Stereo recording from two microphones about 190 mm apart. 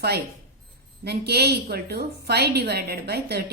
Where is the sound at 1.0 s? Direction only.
60° right (ahead or behind).